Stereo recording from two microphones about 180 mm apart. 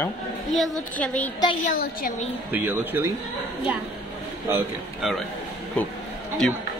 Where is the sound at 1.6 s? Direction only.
50° left (ahead or behind).